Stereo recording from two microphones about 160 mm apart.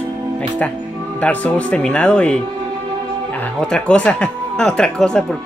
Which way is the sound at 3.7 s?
5° left (ahead or behind).